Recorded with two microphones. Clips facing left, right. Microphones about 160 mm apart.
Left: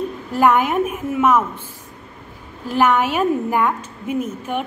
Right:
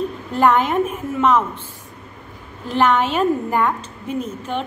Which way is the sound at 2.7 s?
10° left (ahead or behind).